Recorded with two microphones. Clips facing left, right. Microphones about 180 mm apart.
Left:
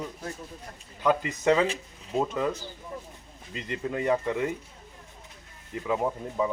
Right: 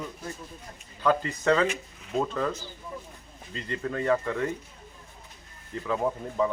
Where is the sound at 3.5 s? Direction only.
15° left (ahead or behind).